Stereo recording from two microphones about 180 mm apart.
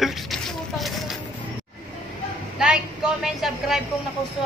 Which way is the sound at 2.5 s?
5° right (ahead or behind).